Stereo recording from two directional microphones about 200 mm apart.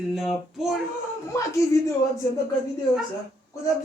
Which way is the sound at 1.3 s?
15° left (ahead or behind).